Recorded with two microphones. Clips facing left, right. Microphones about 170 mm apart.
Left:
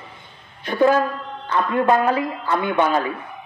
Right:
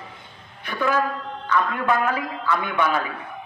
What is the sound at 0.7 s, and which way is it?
A man's voice, 35° left (ahead or behind).